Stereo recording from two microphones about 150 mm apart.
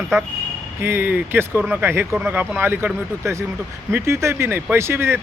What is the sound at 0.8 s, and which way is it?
Speech, 15° right (ahead or behind).